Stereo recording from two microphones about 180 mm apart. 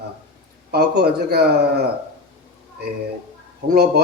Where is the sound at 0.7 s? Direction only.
65° right (ahead or behind).